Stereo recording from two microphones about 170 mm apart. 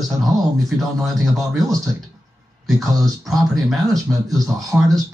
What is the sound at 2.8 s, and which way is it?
Speech, 20° right (ahead or behind).